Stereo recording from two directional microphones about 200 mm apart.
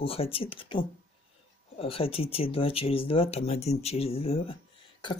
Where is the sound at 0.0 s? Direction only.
30° left (ahead or behind).